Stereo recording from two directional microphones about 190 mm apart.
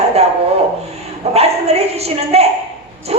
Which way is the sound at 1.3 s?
35° right (ahead or behind).